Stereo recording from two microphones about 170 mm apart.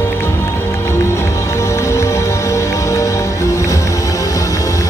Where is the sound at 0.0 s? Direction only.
15° left (ahead or behind).